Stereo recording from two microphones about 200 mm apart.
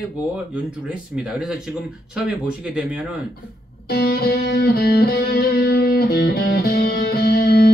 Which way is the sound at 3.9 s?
50° left (ahead or behind).